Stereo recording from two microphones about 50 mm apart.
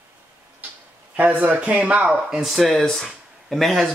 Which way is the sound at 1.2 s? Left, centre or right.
Right.